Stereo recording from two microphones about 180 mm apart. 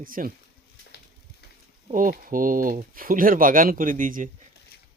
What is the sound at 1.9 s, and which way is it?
Speech, 50° right (ahead or behind).